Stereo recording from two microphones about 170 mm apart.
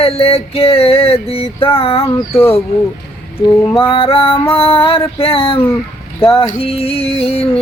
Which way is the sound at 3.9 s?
35° left (ahead or behind).